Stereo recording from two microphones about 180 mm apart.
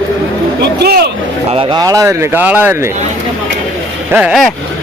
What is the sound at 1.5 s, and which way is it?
Speech, 30° right (ahead or behind).